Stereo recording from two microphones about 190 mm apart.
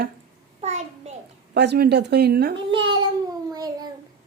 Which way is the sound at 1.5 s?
60° right (ahead or behind).